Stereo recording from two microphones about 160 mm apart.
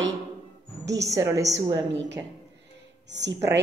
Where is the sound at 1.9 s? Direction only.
90° right.